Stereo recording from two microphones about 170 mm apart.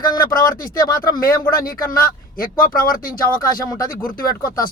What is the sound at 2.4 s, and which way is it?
Speech, 55° left (ahead or behind).